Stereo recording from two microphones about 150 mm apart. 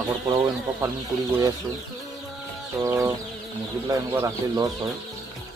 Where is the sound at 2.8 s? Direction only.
20° right (ahead or behind).